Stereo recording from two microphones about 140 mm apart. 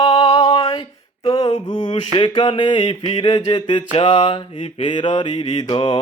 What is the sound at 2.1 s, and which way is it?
Mantra, 35° left (ahead or behind).